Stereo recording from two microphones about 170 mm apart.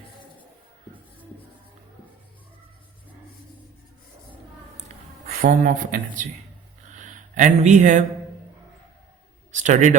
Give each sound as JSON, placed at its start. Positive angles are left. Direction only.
{"t": 5.3, "sound": "speech", "side_deg": -50}
{"t": 6.8, "sound": "a sound", "side_deg": -50}
{"t": 9.5, "sound": "speech", "side_deg": -45}